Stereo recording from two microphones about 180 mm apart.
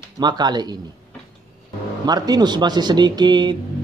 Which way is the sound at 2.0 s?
20° right (ahead or behind).